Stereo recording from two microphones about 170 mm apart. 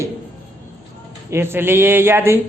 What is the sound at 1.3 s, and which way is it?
A woman's voice, 15° right (ahead or behind).